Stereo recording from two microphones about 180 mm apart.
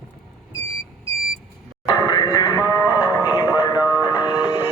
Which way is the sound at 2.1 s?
25° left (ahead or behind).